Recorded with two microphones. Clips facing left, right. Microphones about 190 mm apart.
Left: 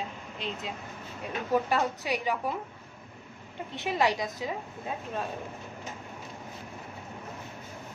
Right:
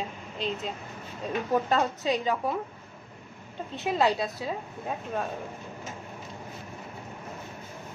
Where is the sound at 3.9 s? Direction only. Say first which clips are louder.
Right 2 dB; 15° left (ahead or behind).